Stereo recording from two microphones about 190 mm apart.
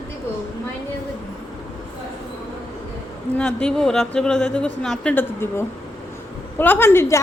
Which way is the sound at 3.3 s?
5° left (ahead or behind).